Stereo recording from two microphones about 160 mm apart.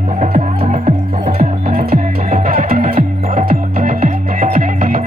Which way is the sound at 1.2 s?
55° right (ahead or behind).